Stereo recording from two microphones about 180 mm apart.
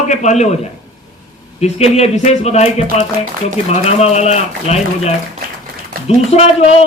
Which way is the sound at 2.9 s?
45° right (ahead or behind).